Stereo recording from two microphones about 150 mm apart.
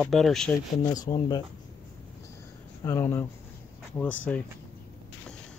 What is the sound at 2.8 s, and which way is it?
Speech, 15° left (ahead or behind).